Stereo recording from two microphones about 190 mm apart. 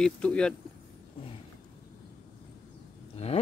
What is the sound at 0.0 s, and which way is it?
Speech, 5° left (ahead or behind).